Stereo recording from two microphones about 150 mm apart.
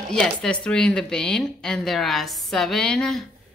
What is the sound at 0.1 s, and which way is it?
A woman's voice, 5° left (ahead or behind).